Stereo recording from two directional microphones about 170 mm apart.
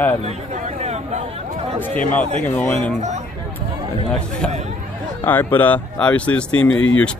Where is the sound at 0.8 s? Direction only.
40° right (ahead or behind).